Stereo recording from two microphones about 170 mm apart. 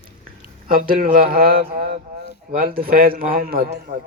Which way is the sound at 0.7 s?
55° right (ahead or behind).